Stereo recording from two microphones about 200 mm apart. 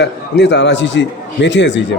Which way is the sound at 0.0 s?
60° left (ahead or behind).